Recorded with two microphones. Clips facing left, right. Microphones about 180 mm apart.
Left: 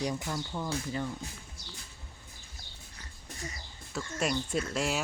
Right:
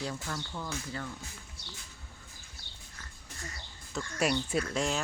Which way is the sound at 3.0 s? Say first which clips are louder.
Left 4 dB; 20° left (ahead or behind).